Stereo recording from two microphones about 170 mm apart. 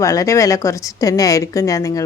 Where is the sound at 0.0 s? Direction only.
20° left (ahead or behind).